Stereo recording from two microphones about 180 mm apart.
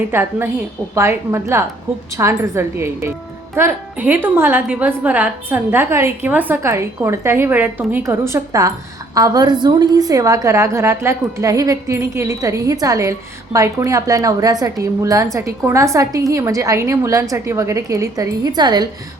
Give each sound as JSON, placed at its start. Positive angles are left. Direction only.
{"t": 0.1, "sound": "a woman's voice", "side_deg": -10}